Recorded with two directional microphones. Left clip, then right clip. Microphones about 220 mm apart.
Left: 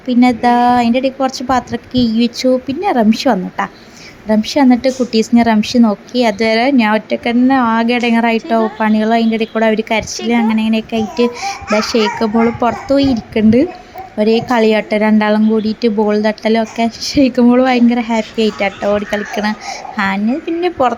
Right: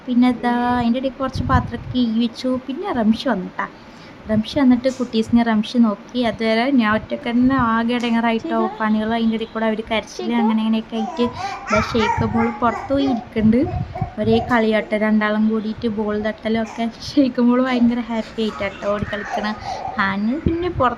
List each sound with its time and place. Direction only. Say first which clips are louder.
0.2 s a woman's voice: left 8 dB; 20° left (ahead or behind)